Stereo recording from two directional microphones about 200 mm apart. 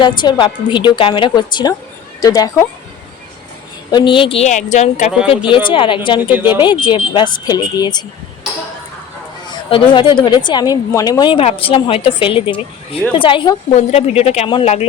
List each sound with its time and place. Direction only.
0.2 s a woman's voice: 25° left (ahead or behind)
3.9 s speech: 25° left (ahead or behind)
5.5 s a woman's voice: 25° left (ahead or behind)
9.5 s a woman's voice: 25° left (ahead or behind)